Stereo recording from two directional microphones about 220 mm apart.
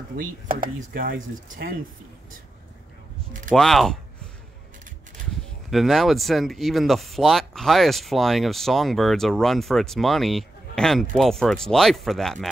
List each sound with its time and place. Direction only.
0.2 s speech: 40° right (ahead or behind)
1.1 s speech: 60° right (ahead or behind)
3.5 s speech: centre (ahead or behind)
5.7 s speech: centre (ahead or behind)